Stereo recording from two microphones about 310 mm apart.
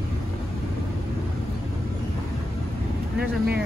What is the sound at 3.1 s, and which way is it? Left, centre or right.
Speech, right.